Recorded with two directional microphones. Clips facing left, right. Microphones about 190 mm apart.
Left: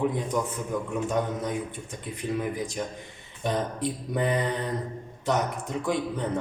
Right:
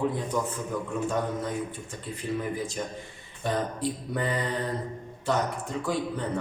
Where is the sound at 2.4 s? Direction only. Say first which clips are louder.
Left 1 dB; 15° left (ahead or behind).